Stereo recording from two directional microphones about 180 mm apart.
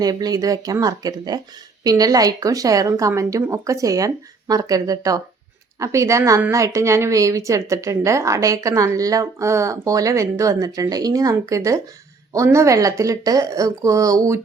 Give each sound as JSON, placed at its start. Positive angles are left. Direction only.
{"t": 0.0, "sound": "a woman's voice", "side_deg": -20}